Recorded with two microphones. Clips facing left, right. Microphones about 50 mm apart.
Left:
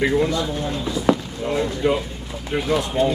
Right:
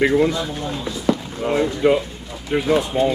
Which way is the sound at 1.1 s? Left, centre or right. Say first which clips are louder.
Left 1 dB; centre.